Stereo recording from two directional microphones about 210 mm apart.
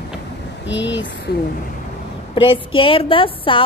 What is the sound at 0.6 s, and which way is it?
Speech, 60° left (ahead or behind).